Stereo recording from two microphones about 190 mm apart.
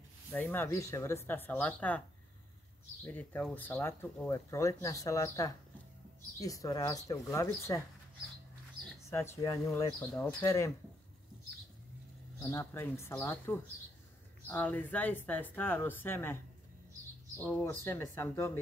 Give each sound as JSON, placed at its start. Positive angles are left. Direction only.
{"t": 0.3, "sound": "speech", "side_deg": 10}
{"t": 3.1, "sound": "speech", "side_deg": 10}
{"t": 9.1, "sound": "speech", "side_deg": 15}
{"t": 12.4, "sound": "speech", "side_deg": 10}
{"t": 17.4, "sound": "speech", "side_deg": 10}